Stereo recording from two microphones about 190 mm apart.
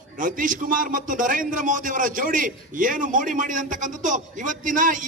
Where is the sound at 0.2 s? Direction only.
45° right (ahead or behind).